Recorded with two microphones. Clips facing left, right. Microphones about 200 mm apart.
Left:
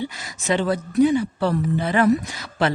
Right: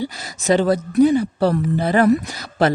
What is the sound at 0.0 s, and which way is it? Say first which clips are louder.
A woman's voice: right 4 dB; 35° right (ahead or behind).